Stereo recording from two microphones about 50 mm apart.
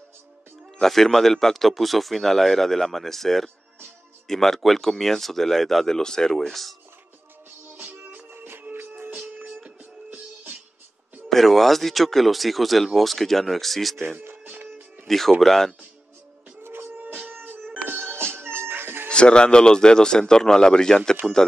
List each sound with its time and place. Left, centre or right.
0.7 s a man's voice: centre
7.7 s music: right
8.3 s music: right
11.2 s speech: centre
13.9 s music: right
15.0 s a man's voice: centre
16.6 s music: right
17.1 s music: right
19.0 s a man's voice: centre